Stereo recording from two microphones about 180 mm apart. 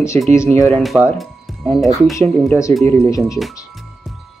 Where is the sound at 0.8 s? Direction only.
Centre (ahead or behind).